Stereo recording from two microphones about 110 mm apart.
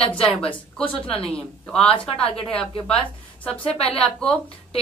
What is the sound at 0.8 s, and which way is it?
Speech, 55° left (ahead or behind).